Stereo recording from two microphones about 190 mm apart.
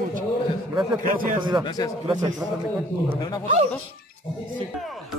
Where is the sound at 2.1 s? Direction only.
20° right (ahead or behind).